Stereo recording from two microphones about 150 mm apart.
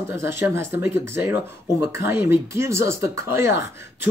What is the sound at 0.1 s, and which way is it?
Speech, 15° right (ahead or behind).